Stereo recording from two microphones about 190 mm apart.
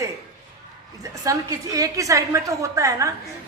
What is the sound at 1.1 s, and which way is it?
A woman's voice, 15° right (ahead or behind).